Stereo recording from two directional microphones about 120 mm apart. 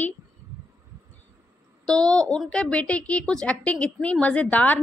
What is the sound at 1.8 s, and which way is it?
A woman's voice, 5° left (ahead or behind).